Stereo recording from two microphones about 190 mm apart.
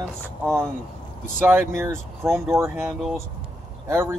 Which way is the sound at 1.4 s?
10° right (ahead or behind).